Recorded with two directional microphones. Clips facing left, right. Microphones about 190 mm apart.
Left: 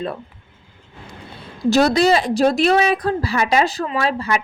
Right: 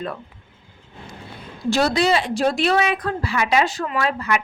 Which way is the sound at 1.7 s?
40° left (ahead or behind).